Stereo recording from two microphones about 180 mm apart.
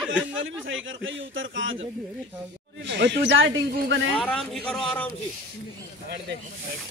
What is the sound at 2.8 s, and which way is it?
Speech, 75° right (ahead or behind).